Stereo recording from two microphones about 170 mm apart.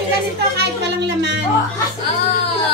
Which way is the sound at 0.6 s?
80° right.